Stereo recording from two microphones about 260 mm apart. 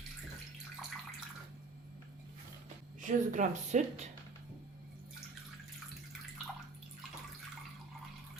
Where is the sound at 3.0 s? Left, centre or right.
Right.